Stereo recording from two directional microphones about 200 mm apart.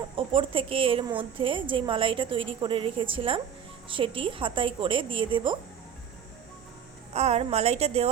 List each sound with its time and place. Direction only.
0.2 s a woman's voice: 25° right (ahead or behind)
7.1 s a woman's voice: 30° right (ahead or behind)